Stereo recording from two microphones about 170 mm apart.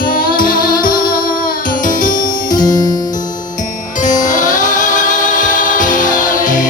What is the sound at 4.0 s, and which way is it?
Music, 50° left (ahead or behind).